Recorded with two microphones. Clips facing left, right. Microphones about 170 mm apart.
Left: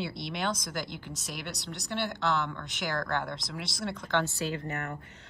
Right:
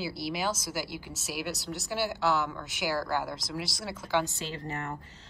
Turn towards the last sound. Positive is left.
turn(degrees=-25)  # may be behind; listen again after turning